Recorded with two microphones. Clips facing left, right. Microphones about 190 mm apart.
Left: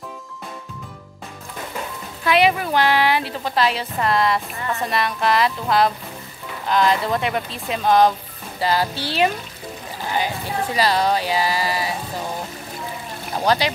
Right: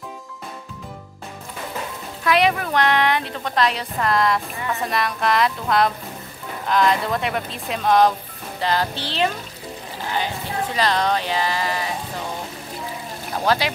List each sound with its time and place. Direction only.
2.2 s a woman's voice: 5° left (ahead or behind)
10.8 s speech: 10° left (ahead or behind)
13.4 s a woman's voice: centre (ahead or behind)